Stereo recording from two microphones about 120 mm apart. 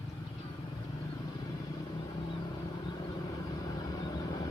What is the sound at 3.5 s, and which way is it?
Vehicle, 30° left (ahead or behind).